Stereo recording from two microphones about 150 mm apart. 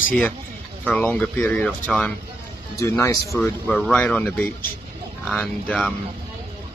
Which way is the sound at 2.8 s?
20° left (ahead or behind).